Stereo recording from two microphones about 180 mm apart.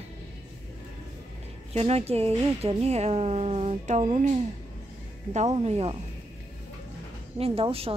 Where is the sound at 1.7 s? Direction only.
35° right (ahead or behind).